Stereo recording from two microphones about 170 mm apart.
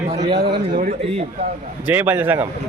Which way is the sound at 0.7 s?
50° right (ahead or behind).